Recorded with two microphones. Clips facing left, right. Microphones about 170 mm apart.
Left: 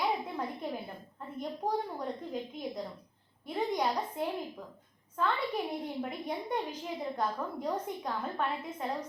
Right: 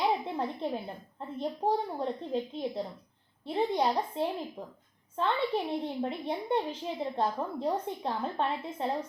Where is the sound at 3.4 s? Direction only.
30° right (ahead or behind).